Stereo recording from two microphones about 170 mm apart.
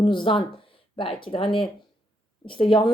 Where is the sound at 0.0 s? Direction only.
30° left (ahead or behind).